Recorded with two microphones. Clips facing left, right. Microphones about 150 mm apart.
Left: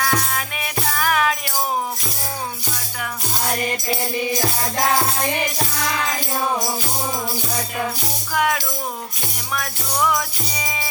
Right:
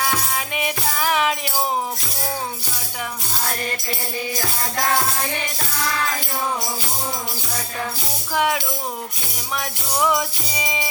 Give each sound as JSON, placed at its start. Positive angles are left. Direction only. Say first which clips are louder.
{"t": 0.0, "sound": "music", "louder": "left 1 dB", "side_deg": -20}
{"t": 8.3, "sound": "music", "louder": "even", "side_deg": -25}
{"t": 9.6, "sound": "music", "louder": "even", "side_deg": -20}